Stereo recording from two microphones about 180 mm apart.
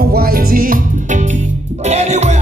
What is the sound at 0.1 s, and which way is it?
Music, 55° right (ahead or behind).